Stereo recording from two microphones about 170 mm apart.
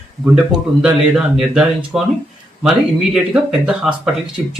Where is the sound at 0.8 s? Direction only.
5° right (ahead or behind).